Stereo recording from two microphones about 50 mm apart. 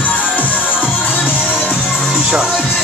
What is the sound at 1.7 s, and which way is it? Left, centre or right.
Music, left.